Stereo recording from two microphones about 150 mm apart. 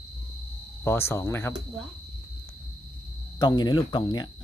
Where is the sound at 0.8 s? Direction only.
15° left (ahead or behind).